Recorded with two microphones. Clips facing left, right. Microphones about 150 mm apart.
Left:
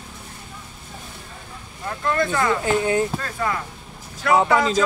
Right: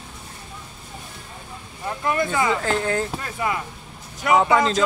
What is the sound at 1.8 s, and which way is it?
Speech, 15° right (ahead or behind).